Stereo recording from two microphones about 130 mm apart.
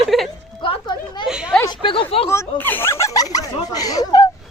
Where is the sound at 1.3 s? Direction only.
5° right (ahead or behind).